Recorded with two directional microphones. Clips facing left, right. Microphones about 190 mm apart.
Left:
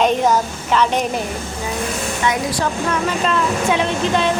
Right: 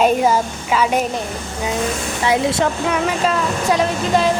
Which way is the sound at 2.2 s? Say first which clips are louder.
Right 4 dB; 25° right (ahead or behind).